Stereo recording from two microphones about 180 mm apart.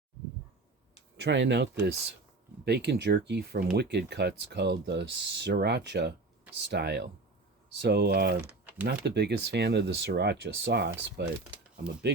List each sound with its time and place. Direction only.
1.1 s speech: 80° right
2.6 s speech: 65° right (ahead or behind)
8.4 s typing: 10° right (ahead or behind)
8.9 s speech: 70° right (ahead or behind)